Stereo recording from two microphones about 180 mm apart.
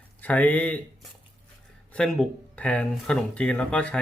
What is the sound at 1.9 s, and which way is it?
Speech, 5° left (ahead or behind).